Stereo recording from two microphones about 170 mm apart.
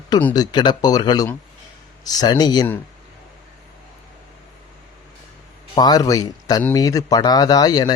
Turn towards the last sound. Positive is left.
turn(degrees=25)  # may be behind; listen again after turning